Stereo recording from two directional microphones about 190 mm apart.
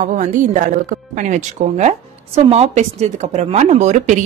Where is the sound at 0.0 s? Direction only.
40° right (ahead or behind).